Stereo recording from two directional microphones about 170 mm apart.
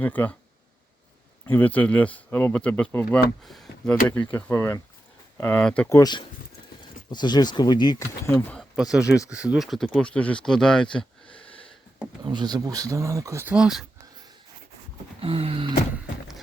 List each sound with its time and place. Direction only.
0.0 s speech: 10° left (ahead or behind)
1.5 s speech: 10° left (ahead or behind)
6.0 s speech: 25° left (ahead or behind)
8.7 s speech: 5° right (ahead or behind)
12.2 s speech: 25° right (ahead or behind); by 13.8 s 5° right (ahead or behind)
15.2 s a sound: 35° right (ahead or behind)